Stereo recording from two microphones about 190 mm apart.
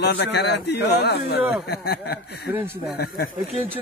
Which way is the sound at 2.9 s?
55° left (ahead or behind).